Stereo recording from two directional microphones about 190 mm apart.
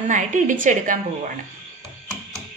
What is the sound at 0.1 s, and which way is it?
Speech, 40° right (ahead or behind).